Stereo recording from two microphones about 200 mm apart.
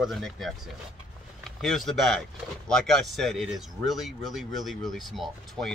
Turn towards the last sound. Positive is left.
turn(degrees=0)  # may be behind; listen again after turning